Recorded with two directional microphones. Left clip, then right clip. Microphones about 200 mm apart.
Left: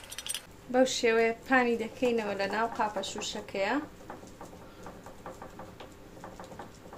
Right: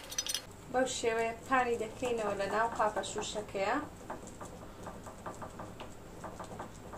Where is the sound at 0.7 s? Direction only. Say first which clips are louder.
Left 6 dB; 50° left (ahead or behind).